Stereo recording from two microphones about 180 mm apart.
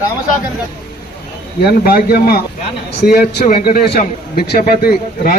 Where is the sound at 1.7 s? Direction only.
60° left (ahead or behind).